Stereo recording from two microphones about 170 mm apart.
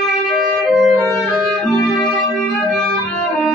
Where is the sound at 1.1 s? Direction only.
Centre (ahead or behind).